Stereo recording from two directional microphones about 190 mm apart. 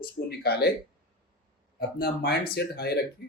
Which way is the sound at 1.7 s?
55° left (ahead or behind).